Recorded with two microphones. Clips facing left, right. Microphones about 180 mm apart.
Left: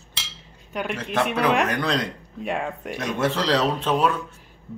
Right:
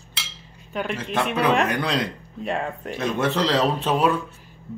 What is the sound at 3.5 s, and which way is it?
Speech, 5° right (ahead or behind).